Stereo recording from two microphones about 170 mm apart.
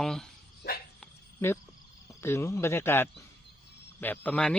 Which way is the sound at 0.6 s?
70° left (ahead or behind).